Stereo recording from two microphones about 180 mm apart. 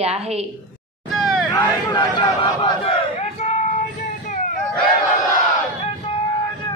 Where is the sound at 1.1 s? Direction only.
Centre (ahead or behind).